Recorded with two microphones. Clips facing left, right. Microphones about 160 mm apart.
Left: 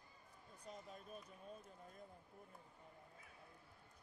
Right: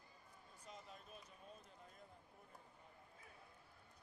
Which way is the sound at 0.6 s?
45° left (ahead or behind).